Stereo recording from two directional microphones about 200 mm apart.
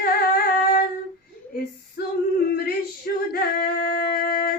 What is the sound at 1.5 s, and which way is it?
Speech, 50° left (ahead or behind).